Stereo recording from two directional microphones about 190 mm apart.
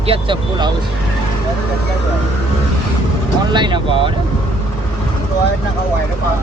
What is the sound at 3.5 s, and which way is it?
Speech, 25° right (ahead or behind).